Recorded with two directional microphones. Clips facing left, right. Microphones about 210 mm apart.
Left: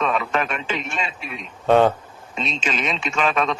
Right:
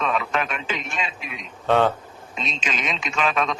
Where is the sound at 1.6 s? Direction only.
15° left (ahead or behind).